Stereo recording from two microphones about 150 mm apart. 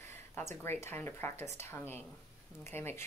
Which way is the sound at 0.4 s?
15° left (ahead or behind).